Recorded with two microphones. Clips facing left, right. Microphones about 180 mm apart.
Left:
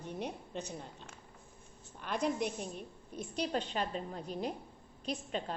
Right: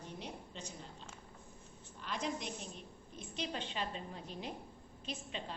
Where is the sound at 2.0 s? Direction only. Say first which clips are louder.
Left 7 dB; 55° left (ahead or behind).